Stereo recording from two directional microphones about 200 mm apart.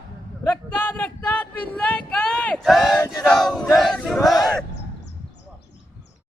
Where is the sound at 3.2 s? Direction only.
Centre (ahead or behind).